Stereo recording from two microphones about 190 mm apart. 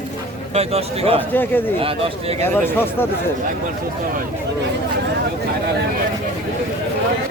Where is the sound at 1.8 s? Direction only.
30° right (ahead or behind).